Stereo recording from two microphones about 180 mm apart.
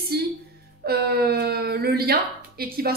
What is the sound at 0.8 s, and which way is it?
Speech, 60° right (ahead or behind).